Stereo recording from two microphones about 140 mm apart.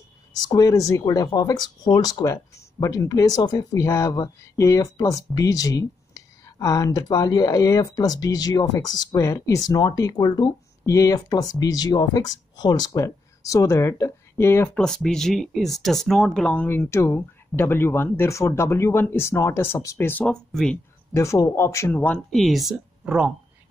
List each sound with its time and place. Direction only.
0.4 s speech: 30° left (ahead or behind)
14.8 s speech: 5° left (ahead or behind)
21.1 s speech: 20° left (ahead or behind)
21.9 s speech: 10° left (ahead or behind); by 23.3 s 10° right (ahead or behind)